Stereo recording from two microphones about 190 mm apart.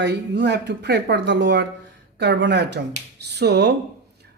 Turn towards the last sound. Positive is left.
turn(degrees=-60)  # may be behind; listen again after turning